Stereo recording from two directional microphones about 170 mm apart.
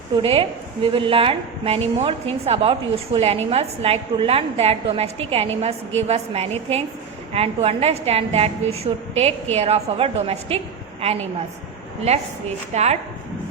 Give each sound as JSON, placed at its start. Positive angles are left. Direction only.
{"t": 0.2, "sound": "a woman's voice", "side_deg": -30}
{"t": 12.7, "sound": "a woman's voice", "side_deg": -40}